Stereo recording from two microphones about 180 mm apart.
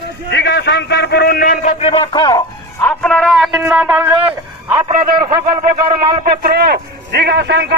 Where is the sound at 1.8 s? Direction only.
35° left (ahead or behind).